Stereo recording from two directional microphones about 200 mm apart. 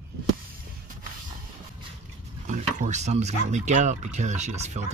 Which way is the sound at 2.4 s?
40° right (ahead or behind).